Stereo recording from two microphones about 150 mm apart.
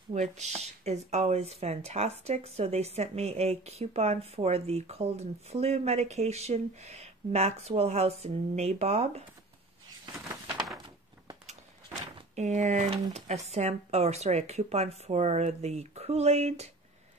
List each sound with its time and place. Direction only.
0.1 s speech: 50° right (ahead or behind)
12.4 s speech: 50° right (ahead or behind)